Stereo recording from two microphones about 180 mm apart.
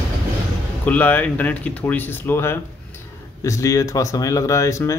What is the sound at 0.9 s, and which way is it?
Speech, 10° left (ahead or behind).